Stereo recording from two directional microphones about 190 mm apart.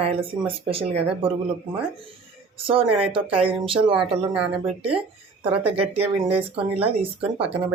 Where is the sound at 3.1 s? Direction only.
30° right (ahead or behind).